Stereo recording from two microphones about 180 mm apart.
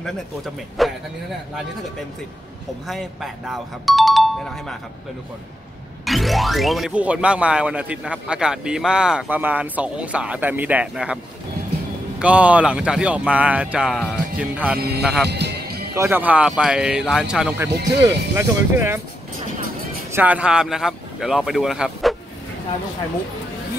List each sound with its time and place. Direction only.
0.8 s speech: centre (ahead or behind)
2.9 s speech: centre (ahead or behind)
6.0 s speech: centre (ahead or behind)
12.2 s speech: 5° right (ahead or behind)
15.2 s music: 65° right (ahead or behind)
15.9 s speech: 10° right (ahead or behind)
18.0 s speech: 15° right (ahead or behind)
20.1 s speech: 10° right (ahead or behind)